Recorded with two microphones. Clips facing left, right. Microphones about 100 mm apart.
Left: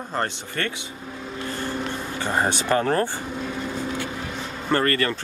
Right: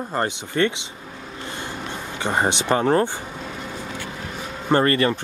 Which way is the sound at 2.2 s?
20° right (ahead or behind).